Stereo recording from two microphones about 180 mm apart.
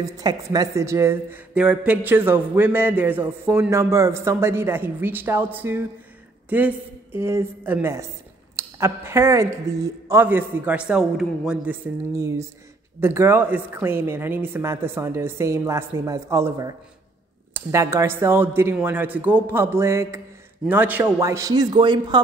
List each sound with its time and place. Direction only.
0.2 s a woman's voice: 20° right (ahead or behind)